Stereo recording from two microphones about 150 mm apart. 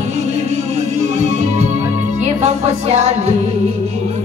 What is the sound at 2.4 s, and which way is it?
Music, 50° right (ahead or behind).